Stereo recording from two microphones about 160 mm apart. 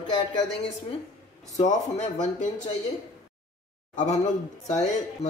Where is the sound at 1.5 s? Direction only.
45° left (ahead or behind).